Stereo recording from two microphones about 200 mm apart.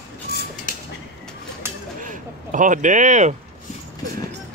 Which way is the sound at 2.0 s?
40° right (ahead or behind).